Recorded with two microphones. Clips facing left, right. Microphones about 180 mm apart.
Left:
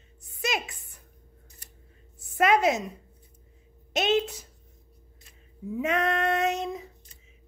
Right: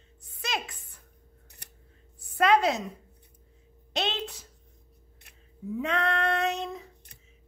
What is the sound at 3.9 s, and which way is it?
Speech, 10° left (ahead or behind).